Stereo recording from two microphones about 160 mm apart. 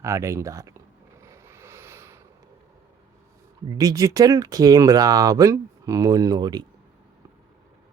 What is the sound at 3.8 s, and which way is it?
Speech, 20° right (ahead or behind).